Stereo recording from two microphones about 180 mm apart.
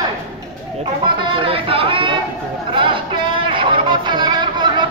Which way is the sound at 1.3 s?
30° right (ahead or behind).